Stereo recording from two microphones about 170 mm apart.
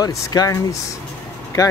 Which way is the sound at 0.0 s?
20° left (ahead or behind).